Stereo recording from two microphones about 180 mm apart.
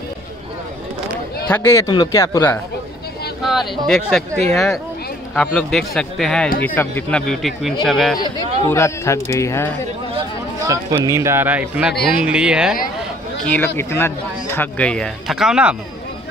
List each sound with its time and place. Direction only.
1.5 s a man's voice: 15° left (ahead or behind)
3.8 s speech: centre (ahead or behind)
8.2 s a man's voice: 15° left (ahead or behind)
10.6 s speech: 20° right (ahead or behind); by 12.7 s 5° right (ahead or behind)
13.4 s a man's voice: 10° left (ahead or behind)